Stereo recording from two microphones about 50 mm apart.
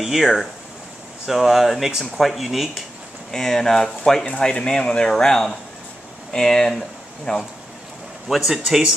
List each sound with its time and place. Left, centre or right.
0.0 s speech: centre
3.3 s speech: centre
8.3 s speech: centre